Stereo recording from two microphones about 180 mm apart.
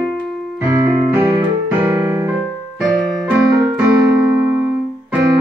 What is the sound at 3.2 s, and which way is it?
Keyboard, 5° right (ahead or behind).